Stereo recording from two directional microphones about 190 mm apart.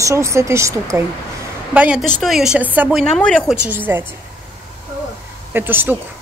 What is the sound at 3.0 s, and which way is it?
Speech, 5° left (ahead or behind).